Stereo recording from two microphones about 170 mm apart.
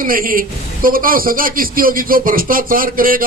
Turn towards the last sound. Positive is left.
turn(degrees=-55)  # may be behind; listen again after turning